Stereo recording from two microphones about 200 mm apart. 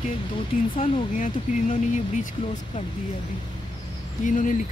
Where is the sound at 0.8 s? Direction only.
40° left (ahead or behind).